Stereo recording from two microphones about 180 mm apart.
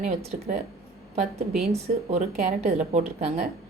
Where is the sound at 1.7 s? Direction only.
35° right (ahead or behind).